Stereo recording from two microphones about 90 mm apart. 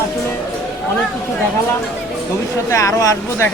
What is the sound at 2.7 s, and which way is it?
Speech, 35° left (ahead or behind).